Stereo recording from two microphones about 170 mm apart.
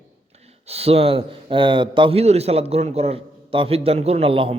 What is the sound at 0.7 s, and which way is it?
Speech, 35° right (ahead or behind).